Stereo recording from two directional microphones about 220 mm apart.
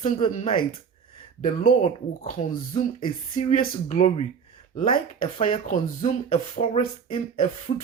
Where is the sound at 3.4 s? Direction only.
35° left (ahead or behind).